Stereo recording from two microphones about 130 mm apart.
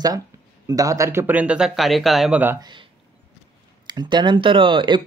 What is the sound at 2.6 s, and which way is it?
Speech, 40° right (ahead or behind).